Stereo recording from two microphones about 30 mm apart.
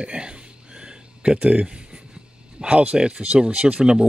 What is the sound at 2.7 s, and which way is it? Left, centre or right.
Speech, right.